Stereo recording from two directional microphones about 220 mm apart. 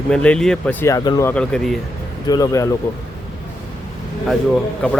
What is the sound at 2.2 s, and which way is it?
Speech, 15° left (ahead or behind).